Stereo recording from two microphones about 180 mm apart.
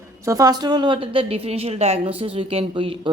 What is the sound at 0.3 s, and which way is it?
Speech, 20° right (ahead or behind).